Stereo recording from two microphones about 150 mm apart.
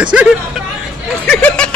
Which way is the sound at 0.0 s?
5° right (ahead or behind).